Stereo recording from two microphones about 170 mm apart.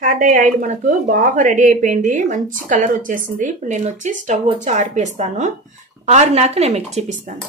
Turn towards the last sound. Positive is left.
turn(degrees=-40)  # may be behind; listen again after turning